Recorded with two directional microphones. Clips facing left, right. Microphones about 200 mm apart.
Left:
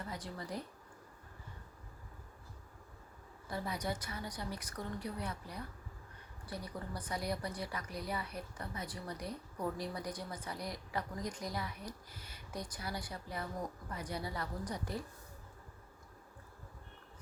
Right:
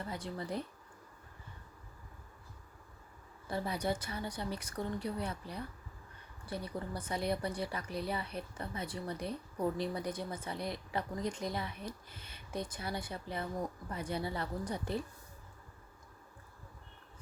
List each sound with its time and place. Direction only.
0.1 s a woman's voice: 25° right (ahead or behind)
3.5 s a woman's voice: 30° right (ahead or behind)